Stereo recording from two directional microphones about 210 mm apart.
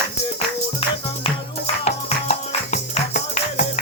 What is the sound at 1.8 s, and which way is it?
Music, 30° left (ahead or behind).